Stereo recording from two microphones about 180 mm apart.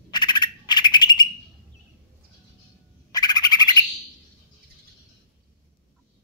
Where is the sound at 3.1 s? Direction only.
20° left (ahead or behind).